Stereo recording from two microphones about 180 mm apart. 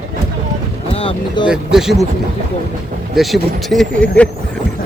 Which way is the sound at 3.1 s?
Centre (ahead or behind).